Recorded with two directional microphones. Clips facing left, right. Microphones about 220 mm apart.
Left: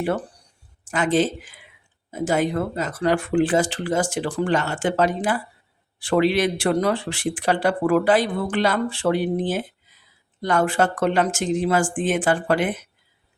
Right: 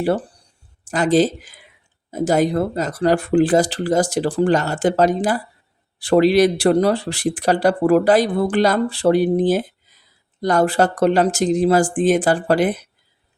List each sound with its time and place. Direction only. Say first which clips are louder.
0.9 s speech: right 4 dB; 35° right (ahead or behind)